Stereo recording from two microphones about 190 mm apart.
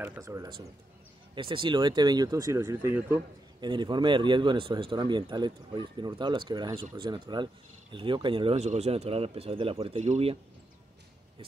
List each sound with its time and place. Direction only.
0.0 s speech: 10° right (ahead or behind); by 10.3 s 35° right (ahead or behind)